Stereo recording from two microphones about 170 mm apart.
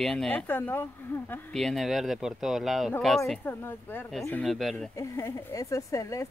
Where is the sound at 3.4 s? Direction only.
15° left (ahead or behind).